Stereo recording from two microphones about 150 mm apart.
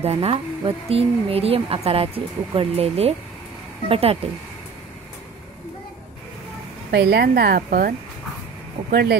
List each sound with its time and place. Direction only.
0.0 s speech: 40° right (ahead or behind)
6.9 s a woman's voice: 90° right; by 7.9 s 75° right (ahead or behind)
8.9 s a woman's voice: 90° right